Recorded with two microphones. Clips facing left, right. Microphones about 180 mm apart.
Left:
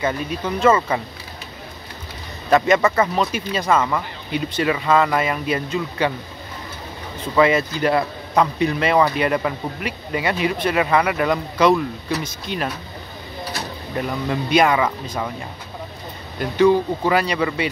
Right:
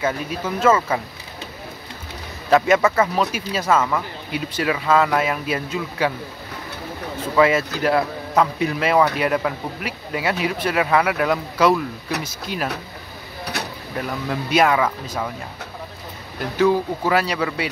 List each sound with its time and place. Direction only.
0.0 s speech: 5° right (ahead or behind)
2.5 s speech: 5° right (ahead or behind)
7.3 s speech: 5° right (ahead or behind)
13.9 s speech: centre (ahead or behind)
16.3 s speech: 5° right (ahead or behind)